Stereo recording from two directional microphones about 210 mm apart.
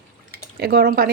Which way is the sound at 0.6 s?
45° right (ahead or behind).